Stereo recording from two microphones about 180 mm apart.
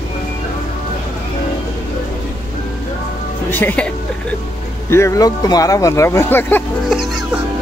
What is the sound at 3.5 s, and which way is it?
Speech, 10° left (ahead or behind).